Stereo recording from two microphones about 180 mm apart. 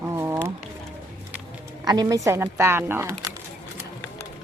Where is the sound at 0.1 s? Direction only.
15° right (ahead or behind).